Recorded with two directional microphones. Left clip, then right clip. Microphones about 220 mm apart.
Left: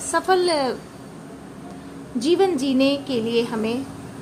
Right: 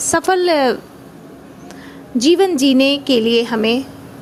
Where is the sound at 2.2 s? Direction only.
30° right (ahead or behind).